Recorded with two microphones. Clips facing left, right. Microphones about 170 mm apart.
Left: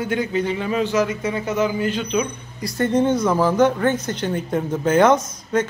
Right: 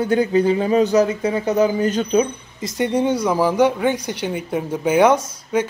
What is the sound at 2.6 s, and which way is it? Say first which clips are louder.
Speech: even; 15° right (ahead or behind).